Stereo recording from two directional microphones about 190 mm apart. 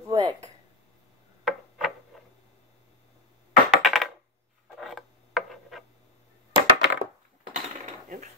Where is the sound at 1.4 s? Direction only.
Centre (ahead or behind).